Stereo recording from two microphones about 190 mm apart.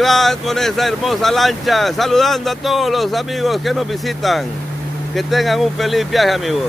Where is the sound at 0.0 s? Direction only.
Centre (ahead or behind).